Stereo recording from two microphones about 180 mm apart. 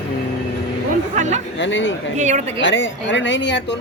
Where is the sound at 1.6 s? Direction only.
90° left.